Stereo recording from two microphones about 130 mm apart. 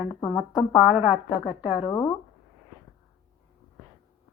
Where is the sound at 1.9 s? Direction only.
20° left (ahead or behind).